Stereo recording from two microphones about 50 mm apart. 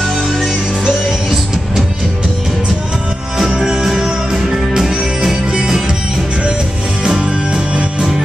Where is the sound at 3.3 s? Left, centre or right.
Centre.